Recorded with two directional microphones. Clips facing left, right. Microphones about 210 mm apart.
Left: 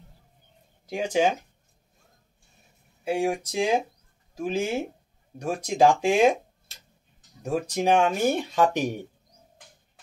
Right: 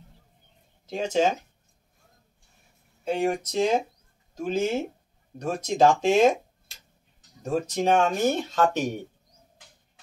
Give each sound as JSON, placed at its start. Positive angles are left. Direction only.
{"t": 0.8, "sound": "speech", "side_deg": 10}
{"t": 3.0, "sound": "speech", "side_deg": 10}
{"t": 7.4, "sound": "speech", "side_deg": 10}